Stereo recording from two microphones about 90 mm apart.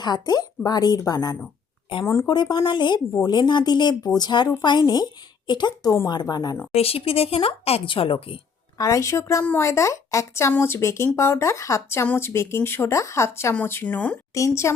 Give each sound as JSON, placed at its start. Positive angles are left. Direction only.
{"t": 0.0, "sound": "a woman's voice", "side_deg": 50}
{"t": 6.8, "sound": "a woman's voice", "side_deg": 90}
{"t": 8.8, "sound": "speech", "side_deg": 35}
{"t": 13.8, "sound": "speech", "side_deg": 15}
{"t": 14.3, "sound": "speech", "side_deg": 35}